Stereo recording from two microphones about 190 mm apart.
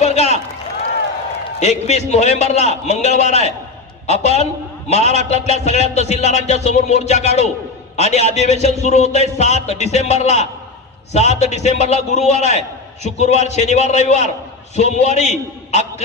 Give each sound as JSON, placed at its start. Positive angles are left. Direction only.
{"t": 0.0, "sound": "run", "side_deg": 35}
{"t": 1.6, "sound": "a man's voice", "side_deg": 35}